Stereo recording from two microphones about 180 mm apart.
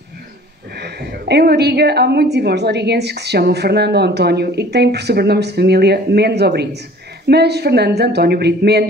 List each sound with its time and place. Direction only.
0.7 s a woman's voice: 65° right (ahead or behind)